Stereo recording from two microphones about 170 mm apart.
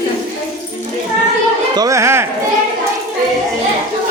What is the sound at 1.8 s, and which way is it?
Music, 20° right (ahead or behind).